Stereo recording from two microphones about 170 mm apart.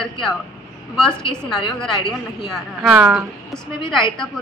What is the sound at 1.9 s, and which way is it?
Speech, 25° left (ahead or behind).